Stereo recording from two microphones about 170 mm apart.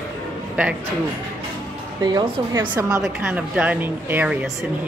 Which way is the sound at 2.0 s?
25° right (ahead or behind).